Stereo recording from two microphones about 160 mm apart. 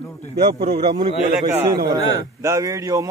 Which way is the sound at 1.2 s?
50° right (ahead or behind).